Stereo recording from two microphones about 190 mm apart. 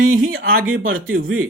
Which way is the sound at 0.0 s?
90° right.